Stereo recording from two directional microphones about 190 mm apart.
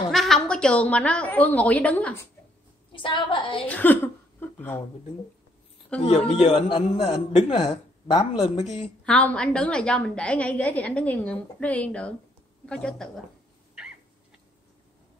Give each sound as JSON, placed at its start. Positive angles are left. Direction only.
{"t": 0.1, "sound": "a woman's voice", "side_deg": 0}
{"t": 2.9, "sound": "a woman's voice", "side_deg": 25}
{"t": 3.6, "sound": "a sound", "side_deg": 10}
{"t": 5.9, "sound": "a woman's voice", "side_deg": 5}
{"t": 6.4, "sound": "a man's voice", "side_deg": 30}
{"t": 9.0, "sound": "a woman's voice", "side_deg": 5}